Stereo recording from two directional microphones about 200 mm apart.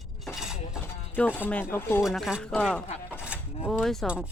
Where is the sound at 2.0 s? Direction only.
Centre (ahead or behind).